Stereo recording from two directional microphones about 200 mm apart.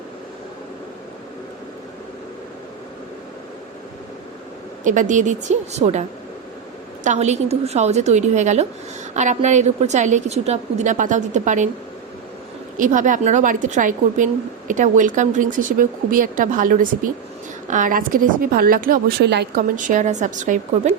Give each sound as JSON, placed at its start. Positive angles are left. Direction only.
{"t": 4.8, "sound": "a woman's voice", "side_deg": -40}
{"t": 12.7, "sound": "a woman's voice", "side_deg": -40}
{"t": 19.7, "sound": "a woman's voice", "side_deg": -40}